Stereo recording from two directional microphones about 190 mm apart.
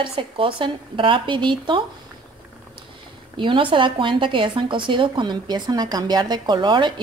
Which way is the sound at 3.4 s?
25° right (ahead or behind).